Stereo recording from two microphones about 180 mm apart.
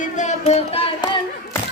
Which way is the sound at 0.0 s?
40° left (ahead or behind).